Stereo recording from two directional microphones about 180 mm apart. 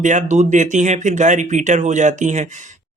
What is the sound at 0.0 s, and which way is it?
A man's voice, 40° right (ahead or behind).